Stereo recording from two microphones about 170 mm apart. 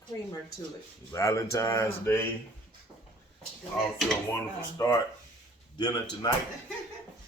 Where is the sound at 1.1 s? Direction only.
20° left (ahead or behind).